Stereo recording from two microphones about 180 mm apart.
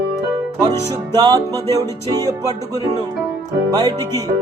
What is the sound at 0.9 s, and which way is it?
Music, 20° right (ahead or behind).